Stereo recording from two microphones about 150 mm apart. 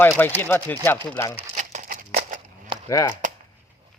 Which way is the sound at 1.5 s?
55° right (ahead or behind).